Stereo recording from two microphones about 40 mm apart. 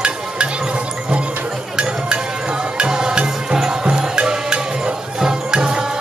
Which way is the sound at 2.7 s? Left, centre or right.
Right.